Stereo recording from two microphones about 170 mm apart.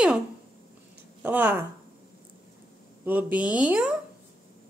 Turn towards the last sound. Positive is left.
turn(degrees=-5)  # may be behind; listen again after turning